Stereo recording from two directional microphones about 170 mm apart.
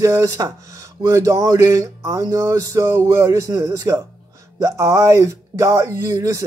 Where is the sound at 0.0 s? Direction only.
20° right (ahead or behind).